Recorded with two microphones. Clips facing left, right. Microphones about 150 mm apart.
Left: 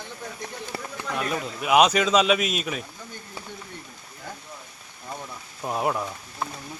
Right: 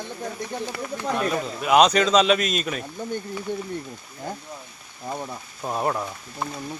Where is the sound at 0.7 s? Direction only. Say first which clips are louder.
Right 2 dB; 35° left (ahead or behind).